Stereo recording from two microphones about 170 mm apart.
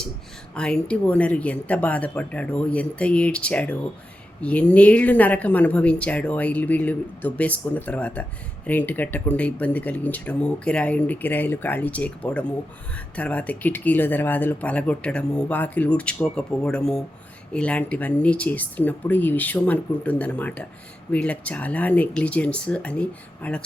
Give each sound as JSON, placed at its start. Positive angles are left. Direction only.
{"t": 0.5, "sound": "a woman's voice", "side_deg": 5}